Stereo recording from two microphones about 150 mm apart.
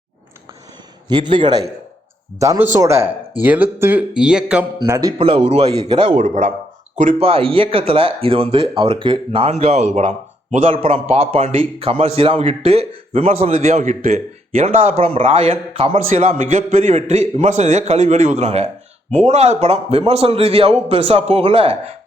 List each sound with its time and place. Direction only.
1.0 s a man's voice: 30° right (ahead or behind)
2.4 s speech: 20° right (ahead or behind); by 4.6 s 5° right (ahead or behind)
4.9 s speech: 25° right (ahead or behind)
5.1 s a man's voice: 35° right (ahead or behind)
5.6 s speech: 25° right (ahead or behind)
6.0 s a man's voice: 50° right (ahead or behind)
7.2 s a man's voice: 40° right (ahead or behind)
10.8 s a man's voice: 40° right (ahead or behind)